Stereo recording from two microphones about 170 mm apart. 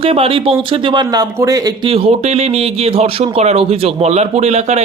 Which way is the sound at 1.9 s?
35° right (ahead or behind).